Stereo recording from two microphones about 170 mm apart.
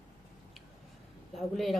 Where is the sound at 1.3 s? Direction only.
Centre (ahead or behind).